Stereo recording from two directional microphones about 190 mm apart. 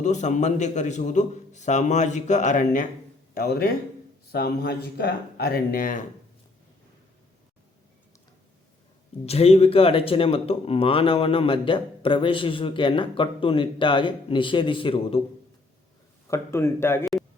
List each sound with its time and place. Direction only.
0.0 s a man's voice: 40° left (ahead or behind)
3.3 s speech: 50° left (ahead or behind)
9.2 s speech: 30° left (ahead or behind)
16.3 s speech: 15° left (ahead or behind)